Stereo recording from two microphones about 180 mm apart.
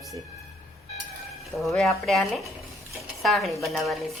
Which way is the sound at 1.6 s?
Centre (ahead or behind).